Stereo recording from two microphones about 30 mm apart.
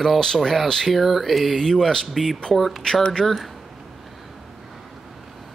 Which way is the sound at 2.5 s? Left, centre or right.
Centre.